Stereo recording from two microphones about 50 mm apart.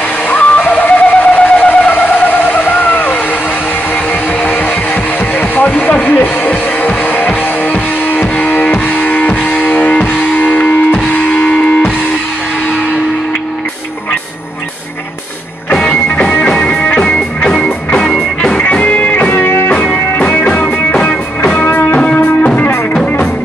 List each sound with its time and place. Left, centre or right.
0.3 s music: left
5.3 s vehicle: left
7.0 s music: left
15.7 s music: left
19.3 s music: left
20.2 s music: left
21.6 s music: left
21.9 s music: left